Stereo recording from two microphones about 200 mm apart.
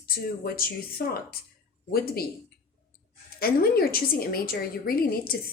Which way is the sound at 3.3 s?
50° left (ahead or behind).